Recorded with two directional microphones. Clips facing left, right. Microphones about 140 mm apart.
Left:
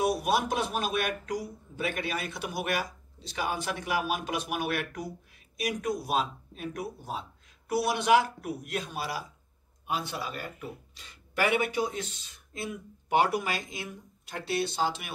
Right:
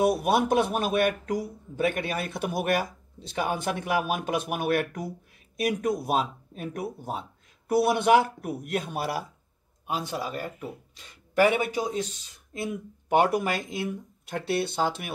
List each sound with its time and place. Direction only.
0.0 s a man's voice: 55° right (ahead or behind)
9.8 s speech: 40° right (ahead or behind)
12.6 s a man's voice: 50° right (ahead or behind)